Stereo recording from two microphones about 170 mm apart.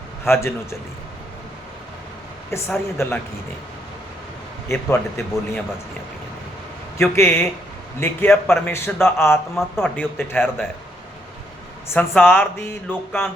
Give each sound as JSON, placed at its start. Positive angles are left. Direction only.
{"t": 0.3, "sound": "a man's voice", "side_deg": 15}
{"t": 2.5, "sound": "a man's voice", "side_deg": 15}
{"t": 4.7, "sound": "a man's voice", "side_deg": 15}
{"t": 7.0, "sound": "a man's voice", "side_deg": 15}
{"t": 11.9, "sound": "a man's voice", "side_deg": 10}